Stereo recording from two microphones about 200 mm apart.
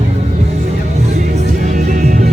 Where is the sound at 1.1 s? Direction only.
35° right (ahead or behind).